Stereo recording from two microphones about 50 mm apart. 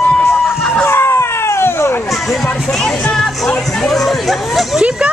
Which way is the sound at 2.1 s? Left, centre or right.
Centre.